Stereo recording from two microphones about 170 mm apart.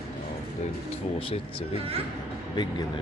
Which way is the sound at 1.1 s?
35° left (ahead or behind).